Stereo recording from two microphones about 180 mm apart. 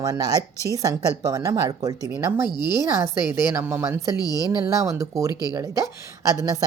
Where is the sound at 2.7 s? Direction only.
15° right (ahead or behind).